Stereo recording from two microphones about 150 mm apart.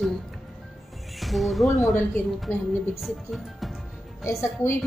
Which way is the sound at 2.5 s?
15° left (ahead or behind).